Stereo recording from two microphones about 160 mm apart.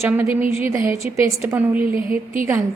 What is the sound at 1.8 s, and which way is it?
Speech, 60° right (ahead or behind).